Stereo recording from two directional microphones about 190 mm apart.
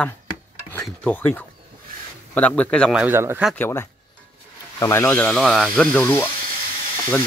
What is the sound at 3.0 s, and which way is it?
Speech, 10° right (ahead or behind).